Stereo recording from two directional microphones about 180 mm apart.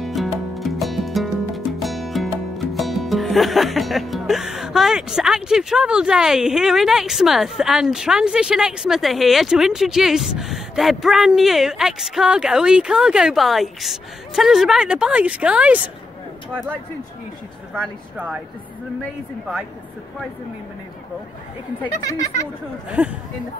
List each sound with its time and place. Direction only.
0.0 s music: centre (ahead or behind)
17.7 s speech: 5° right (ahead or behind)
22.0 s speech: 15° left (ahead or behind)
22.8 s speech: 5° right (ahead or behind)